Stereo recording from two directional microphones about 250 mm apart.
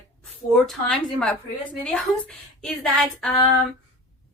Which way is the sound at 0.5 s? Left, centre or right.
Centre.